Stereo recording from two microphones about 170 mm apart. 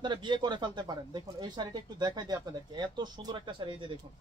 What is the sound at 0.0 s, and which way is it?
Speech, 25° right (ahead or behind).